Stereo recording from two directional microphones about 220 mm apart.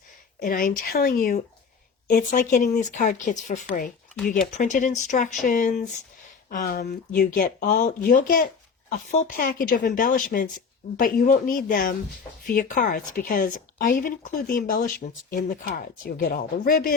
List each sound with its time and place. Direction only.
0.3 s speech: 40° left (ahead or behind)